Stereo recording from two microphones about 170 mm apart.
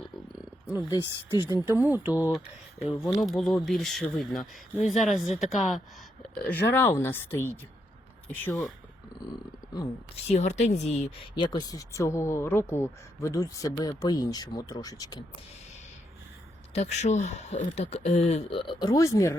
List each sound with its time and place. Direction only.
1.5 s speech: 15° right (ahead or behind)
2.8 s speech: centre (ahead or behind)
6.4 s speech: 10° left (ahead or behind)
10.2 s speech: 40° left (ahead or behind); by 15.2 s 20° left (ahead or behind)
16.7 s speech: 40° left (ahead or behind); by 19.4 s 20° left (ahead or behind)